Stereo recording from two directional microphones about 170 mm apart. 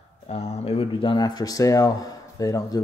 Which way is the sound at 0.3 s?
40° left (ahead or behind).